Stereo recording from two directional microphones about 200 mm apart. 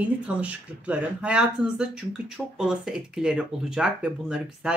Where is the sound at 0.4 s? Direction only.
5° right (ahead or behind).